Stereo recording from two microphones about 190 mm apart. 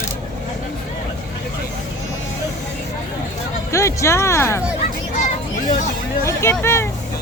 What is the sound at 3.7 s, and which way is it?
Speech, 15° left (ahead or behind).